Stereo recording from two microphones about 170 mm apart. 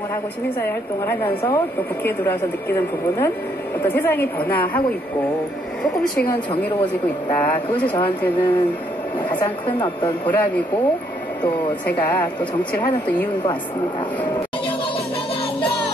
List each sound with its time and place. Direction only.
0.6 s a woman's voice: 10° left (ahead or behind)
7.3 s a woman's voice: 10° left (ahead or behind)
8.4 s a woman's voice: 25° left (ahead or behind)
10.2 s a woman's voice: 10° left (ahead or behind)